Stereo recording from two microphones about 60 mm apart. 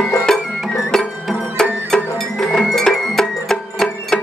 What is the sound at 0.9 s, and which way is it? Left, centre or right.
Cowbell, centre.